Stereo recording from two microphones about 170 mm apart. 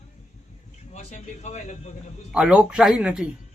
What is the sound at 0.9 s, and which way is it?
Speech, 45° left (ahead or behind).